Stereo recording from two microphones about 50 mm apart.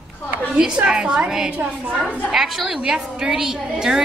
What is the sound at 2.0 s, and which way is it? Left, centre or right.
A woman's voice, centre.